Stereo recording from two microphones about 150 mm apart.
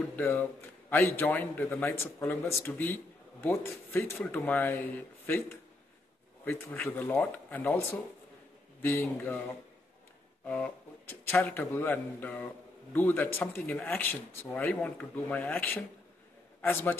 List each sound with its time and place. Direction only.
0.1 s a man's voice: 15° left (ahead or behind)
10.4 s a man's voice: 10° left (ahead or behind)